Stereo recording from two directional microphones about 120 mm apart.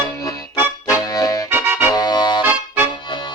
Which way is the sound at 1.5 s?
15° right (ahead or behind).